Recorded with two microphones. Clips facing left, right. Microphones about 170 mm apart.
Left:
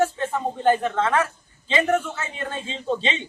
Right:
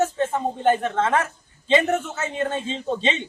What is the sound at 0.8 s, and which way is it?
Speech, 20° right (ahead or behind).